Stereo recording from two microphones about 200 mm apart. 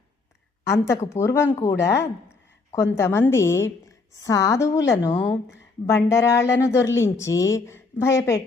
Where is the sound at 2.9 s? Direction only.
10° left (ahead or behind).